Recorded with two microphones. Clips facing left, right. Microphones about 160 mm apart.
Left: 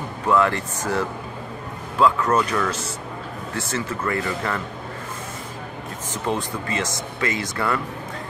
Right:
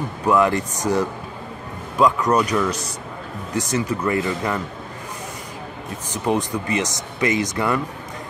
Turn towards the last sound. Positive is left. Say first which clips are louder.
# right 4 dB
turn(degrees=-15)  # may be behind; listen again after turning